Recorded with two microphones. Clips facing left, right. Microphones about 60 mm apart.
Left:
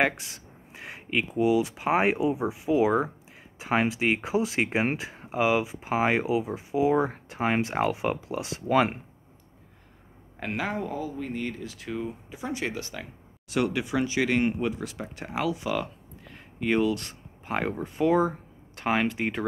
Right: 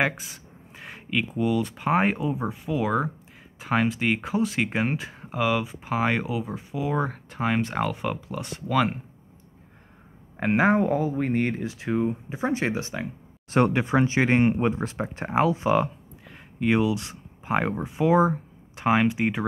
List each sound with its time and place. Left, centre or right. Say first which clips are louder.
0.0 s speech: even; centre
10.4 s speech: right 10 dB; right
11.6 s speech: right 8 dB; right
13.5 s speech: right 5 dB; right
16.5 s speech: right 2 dB; centre